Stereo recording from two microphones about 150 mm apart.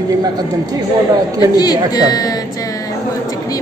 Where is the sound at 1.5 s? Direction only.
25° left (ahead or behind).